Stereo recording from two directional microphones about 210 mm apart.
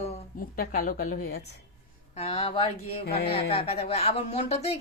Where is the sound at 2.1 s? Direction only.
30° left (ahead or behind).